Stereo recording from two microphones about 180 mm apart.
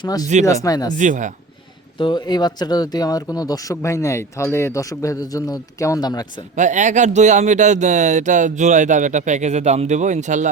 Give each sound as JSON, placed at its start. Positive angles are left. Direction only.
{"t": 0.0, "sound": "speech", "side_deg": 20}
{"t": 0.9, "sound": "speech", "side_deg": -45}
{"t": 2.0, "sound": "speech", "side_deg": 25}
{"t": 6.6, "sound": "speech", "side_deg": -45}